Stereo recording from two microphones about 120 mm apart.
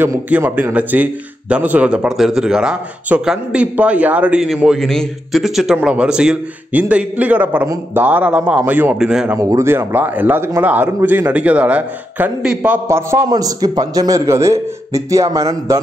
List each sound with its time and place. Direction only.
0.3 s a man's voice: 15° right (ahead or behind)
9.4 s a man's voice: 25° right (ahead or behind)